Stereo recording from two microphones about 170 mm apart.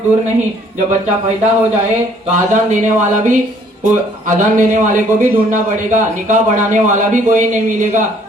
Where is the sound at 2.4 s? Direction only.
45° right (ahead or behind).